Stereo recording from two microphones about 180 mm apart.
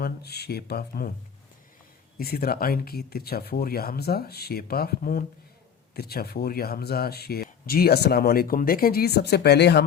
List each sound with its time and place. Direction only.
0.0 s speech: 65° left (ahead or behind)
2.1 s speech: 55° left (ahead or behind)